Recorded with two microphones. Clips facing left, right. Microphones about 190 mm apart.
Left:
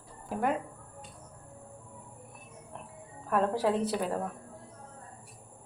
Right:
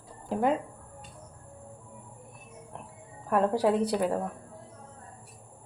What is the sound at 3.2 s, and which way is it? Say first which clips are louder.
Speech: right 3 dB; 10° right (ahead or behind).